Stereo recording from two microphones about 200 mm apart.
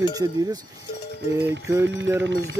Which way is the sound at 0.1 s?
20° right (ahead or behind).